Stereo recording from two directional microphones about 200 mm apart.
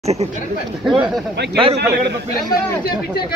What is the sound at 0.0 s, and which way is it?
Speech, 30° right (ahead or behind).